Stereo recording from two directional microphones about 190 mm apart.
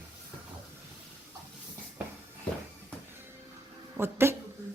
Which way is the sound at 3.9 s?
10° right (ahead or behind).